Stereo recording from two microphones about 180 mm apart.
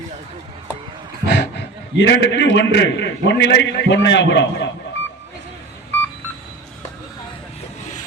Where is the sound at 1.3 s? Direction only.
70° left (ahead or behind).